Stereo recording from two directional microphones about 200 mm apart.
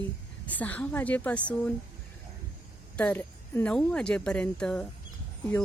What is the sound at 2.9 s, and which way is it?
Speech, 10° left (ahead or behind).